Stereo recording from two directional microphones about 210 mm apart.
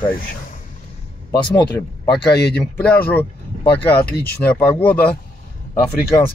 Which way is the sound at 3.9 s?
50° left (ahead or behind).